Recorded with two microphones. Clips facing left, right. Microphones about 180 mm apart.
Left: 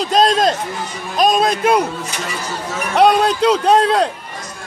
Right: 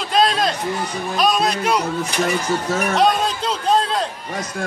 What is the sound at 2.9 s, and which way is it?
A man's voice, 60° left (ahead or behind).